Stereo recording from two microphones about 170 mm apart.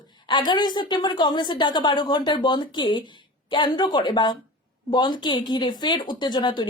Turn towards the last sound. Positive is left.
turn(degrees=25)  # may be behind; listen again after turning